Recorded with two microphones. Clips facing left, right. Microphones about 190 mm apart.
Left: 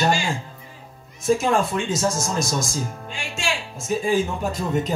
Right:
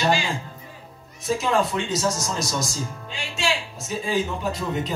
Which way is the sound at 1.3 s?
50° left (ahead or behind).